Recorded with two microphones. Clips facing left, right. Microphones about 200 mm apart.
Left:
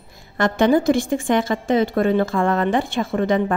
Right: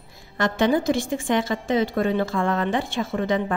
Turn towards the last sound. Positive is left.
turn(degrees=55)  # may be behind; listen again after turning